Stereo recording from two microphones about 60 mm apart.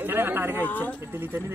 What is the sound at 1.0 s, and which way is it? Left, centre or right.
Speech, right.